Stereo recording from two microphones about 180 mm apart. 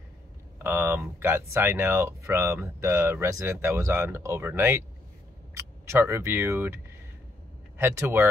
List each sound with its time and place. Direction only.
0.6 s speech: 10° right (ahead or behind)